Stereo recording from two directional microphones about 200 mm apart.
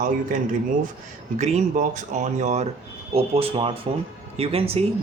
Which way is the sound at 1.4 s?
35° right (ahead or behind).